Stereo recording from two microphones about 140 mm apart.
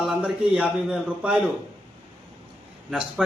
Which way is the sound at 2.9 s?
5° right (ahead or behind).